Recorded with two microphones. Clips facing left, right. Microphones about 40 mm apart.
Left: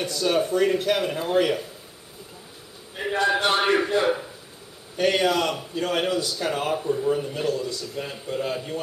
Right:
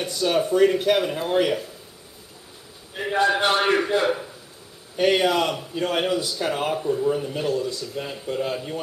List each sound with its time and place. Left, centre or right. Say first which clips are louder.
0.0 s a man's voice: right 1 dB; centre
3.0 s a man's voice: right 2 dB; centre